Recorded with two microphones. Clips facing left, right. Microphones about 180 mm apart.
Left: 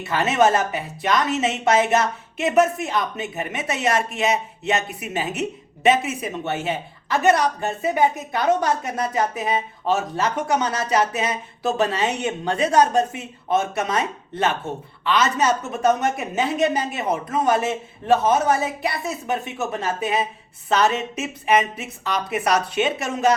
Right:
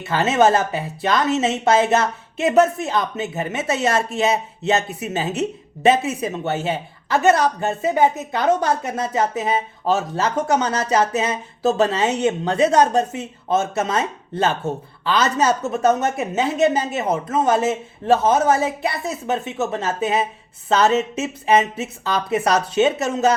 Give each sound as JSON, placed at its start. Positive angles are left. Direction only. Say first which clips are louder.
{"t": 0.1, "sound": "a woman's voice", "louder": "right 2 dB", "side_deg": -30}